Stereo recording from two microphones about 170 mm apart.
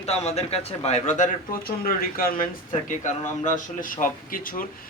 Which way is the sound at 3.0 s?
50° left (ahead or behind).